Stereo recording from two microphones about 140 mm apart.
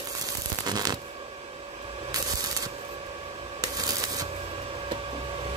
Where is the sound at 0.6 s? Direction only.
30° right (ahead or behind).